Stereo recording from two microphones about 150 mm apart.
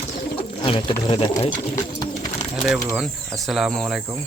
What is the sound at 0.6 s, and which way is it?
Speech, 35° left (ahead or behind).